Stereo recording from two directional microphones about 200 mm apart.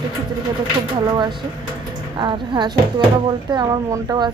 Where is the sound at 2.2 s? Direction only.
25° right (ahead or behind).